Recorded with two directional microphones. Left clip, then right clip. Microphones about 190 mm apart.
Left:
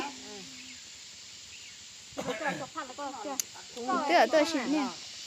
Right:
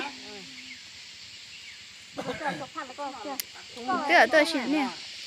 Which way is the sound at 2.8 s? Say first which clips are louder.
Right 2 dB; 15° left (ahead or behind).